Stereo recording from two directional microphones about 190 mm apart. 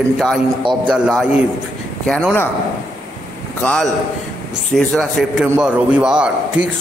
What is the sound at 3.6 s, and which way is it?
A man's voice, 5° left (ahead or behind).